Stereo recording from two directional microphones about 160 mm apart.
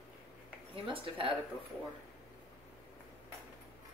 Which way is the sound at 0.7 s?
35° right (ahead or behind).